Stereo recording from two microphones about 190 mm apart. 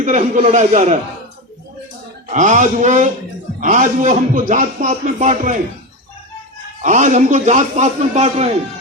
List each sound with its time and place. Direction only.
0.0 s a man's voice: 40° right (ahead or behind)
2.3 s a man's voice: 40° right (ahead or behind)
6.8 s a man's voice: 40° right (ahead or behind)